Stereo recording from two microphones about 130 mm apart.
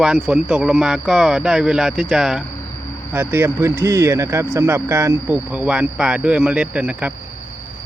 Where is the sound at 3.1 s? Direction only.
15° right (ahead or behind).